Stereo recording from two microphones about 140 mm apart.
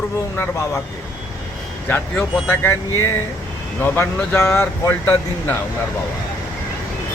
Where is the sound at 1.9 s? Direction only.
15° left (ahead or behind).